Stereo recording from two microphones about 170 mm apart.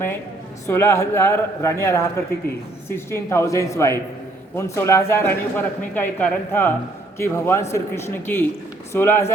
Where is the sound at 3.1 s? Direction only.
15° left (ahead or behind).